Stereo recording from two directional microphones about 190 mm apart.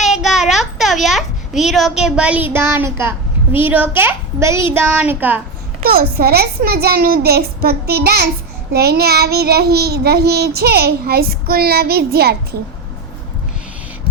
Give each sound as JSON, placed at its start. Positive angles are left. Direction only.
{"t": 0.0, "sound": "a child's voice", "side_deg": 0}
{"t": 4.7, "sound": "child singing", "side_deg": -10}
{"t": 5.8, "sound": "child singing", "side_deg": -50}